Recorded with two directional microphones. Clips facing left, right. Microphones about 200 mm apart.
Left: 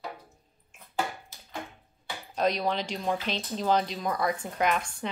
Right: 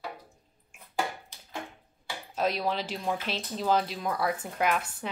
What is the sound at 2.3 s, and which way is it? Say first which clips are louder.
Speech: left 2 dB; 5° right (ahead or behind).